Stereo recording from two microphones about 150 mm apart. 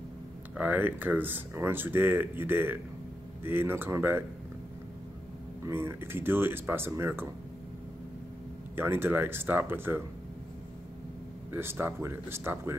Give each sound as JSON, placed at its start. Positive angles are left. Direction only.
{"t": 0.6, "sound": "speech", "side_deg": -10}
{"t": 5.7, "sound": "speech", "side_deg": -15}
{"t": 8.7, "sound": "speech", "side_deg": -15}
{"t": 11.5, "sound": "speech", "side_deg": -15}